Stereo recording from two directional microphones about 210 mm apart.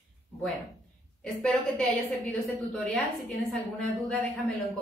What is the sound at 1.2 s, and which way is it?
A woman's voice, centre (ahead or behind).